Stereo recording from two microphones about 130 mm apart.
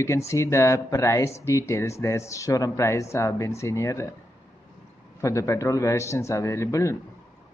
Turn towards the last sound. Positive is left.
turn(degrees=20)  # may be behind; listen again after turning